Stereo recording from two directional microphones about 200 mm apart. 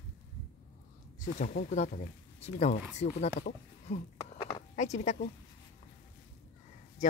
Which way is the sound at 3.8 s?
30° left (ahead or behind).